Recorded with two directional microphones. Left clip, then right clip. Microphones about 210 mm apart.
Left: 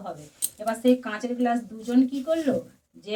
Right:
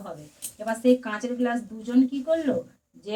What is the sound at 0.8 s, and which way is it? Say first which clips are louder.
Speech: right 2 dB; 10° left (ahead or behind).